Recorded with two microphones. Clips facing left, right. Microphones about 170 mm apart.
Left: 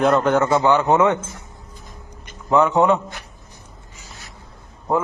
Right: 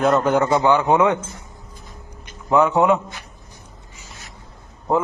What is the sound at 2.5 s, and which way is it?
Speech, 10° right (ahead or behind).